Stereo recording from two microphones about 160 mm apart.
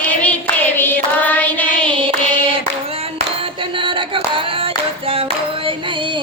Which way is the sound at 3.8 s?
30° right (ahead or behind).